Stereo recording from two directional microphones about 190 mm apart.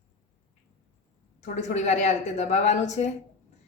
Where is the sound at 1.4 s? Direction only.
35° left (ahead or behind).